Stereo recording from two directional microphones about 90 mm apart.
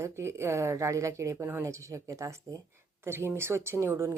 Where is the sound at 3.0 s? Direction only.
30° right (ahead or behind).